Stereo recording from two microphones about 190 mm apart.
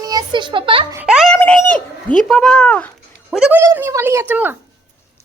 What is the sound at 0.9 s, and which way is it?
Speech, 5° right (ahead or behind).